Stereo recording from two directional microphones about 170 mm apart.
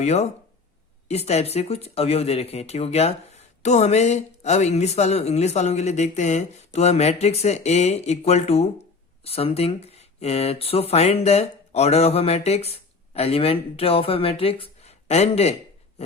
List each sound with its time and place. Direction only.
0.0 s speech: 40° left (ahead or behind)